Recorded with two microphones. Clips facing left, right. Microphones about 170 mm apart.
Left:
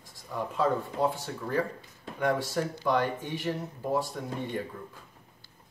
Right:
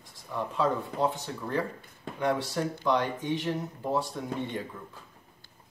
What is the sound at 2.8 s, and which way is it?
Speech, 10° left (ahead or behind).